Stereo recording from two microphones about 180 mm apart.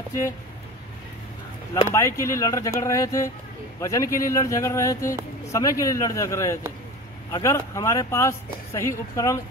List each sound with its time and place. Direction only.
1.8 s speech: 15° left (ahead or behind)